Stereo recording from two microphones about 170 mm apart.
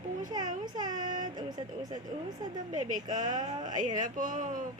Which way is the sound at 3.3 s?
25° right (ahead or behind).